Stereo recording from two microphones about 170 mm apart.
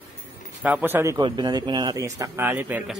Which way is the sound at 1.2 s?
25° right (ahead or behind).